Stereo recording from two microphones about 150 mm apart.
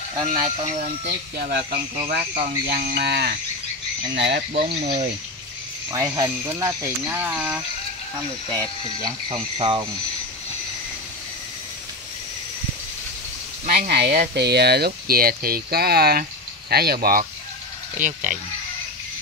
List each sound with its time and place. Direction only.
0.3 s speech: 45° right (ahead or behind)
1.3 s speech: 80° right
4.8 s speech: 50° right (ahead or behind)
5.9 s speech: 20° right (ahead or behind)
8.5 s speech: 25° right (ahead or behind)
13.7 s speech: 80° right
17.9 s speech: 60° right (ahead or behind)